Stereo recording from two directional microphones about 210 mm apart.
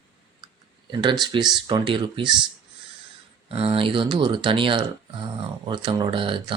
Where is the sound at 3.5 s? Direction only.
25° right (ahead or behind).